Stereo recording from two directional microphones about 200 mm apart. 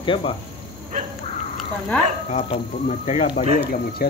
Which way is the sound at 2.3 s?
35° left (ahead or behind).